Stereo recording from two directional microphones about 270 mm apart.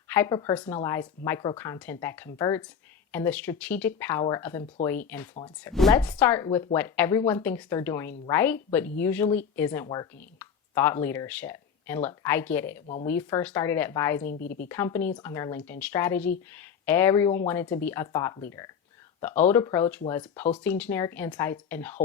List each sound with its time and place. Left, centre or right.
0.1 s speech: centre
14.3 s speech: left
14.7 s speech: centre